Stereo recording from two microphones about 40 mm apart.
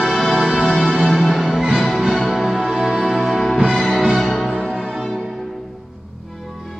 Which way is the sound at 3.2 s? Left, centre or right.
Centre.